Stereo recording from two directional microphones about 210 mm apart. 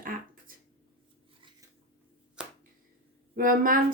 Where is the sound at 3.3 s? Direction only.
40° right (ahead or behind).